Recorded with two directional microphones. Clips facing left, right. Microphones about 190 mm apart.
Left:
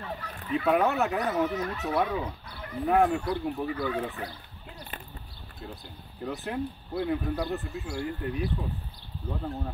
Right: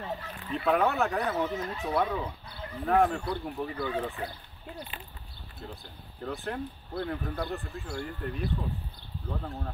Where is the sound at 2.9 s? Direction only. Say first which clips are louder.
Left 1 dB; 10° left (ahead or behind).